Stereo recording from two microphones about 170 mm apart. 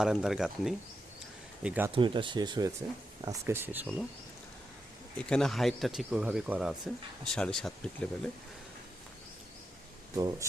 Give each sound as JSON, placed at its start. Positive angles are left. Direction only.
{"t": 0.0, "sound": "speech", "side_deg": 0}
{"t": 1.9, "sound": "speech", "side_deg": -30}
{"t": 3.2, "sound": "speech", "side_deg": -15}
{"t": 5.1, "sound": "speech", "side_deg": 5}